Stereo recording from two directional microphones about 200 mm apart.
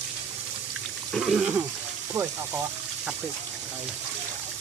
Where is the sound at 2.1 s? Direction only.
15° right (ahead or behind).